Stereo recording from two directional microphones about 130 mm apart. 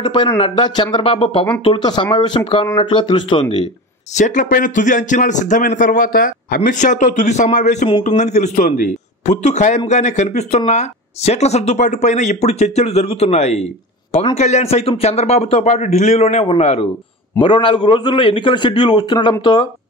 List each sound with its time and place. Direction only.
0.0 s a man's voice: 40° left (ahead or behind)
4.1 s a man's voice: 75° left (ahead or behind); by 16.8 s 55° left (ahead or behind)
17.4 s a man's voice: 40° left (ahead or behind)